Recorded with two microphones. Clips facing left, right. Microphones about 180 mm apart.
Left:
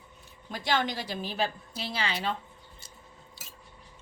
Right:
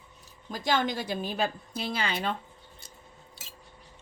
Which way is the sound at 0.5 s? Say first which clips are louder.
Right 2 dB; 45° right (ahead or behind).